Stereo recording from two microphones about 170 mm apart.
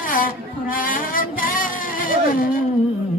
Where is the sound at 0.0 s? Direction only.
55° left (ahead or behind).